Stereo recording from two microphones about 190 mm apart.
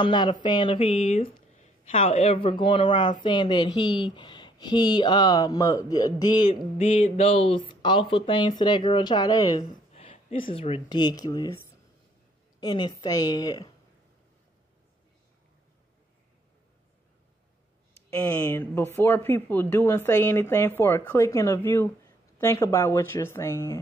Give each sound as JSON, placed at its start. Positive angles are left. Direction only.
{"t": 0.0, "sound": "speech", "side_deg": 25}
{"t": 6.8, "sound": "speech", "side_deg": 35}
{"t": 9.9, "sound": "speech", "side_deg": 30}
{"t": 18.1, "sound": "speech", "side_deg": 15}